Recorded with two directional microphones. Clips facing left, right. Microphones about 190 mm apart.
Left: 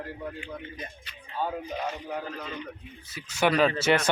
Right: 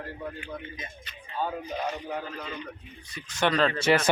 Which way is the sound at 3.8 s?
Centre (ahead or behind).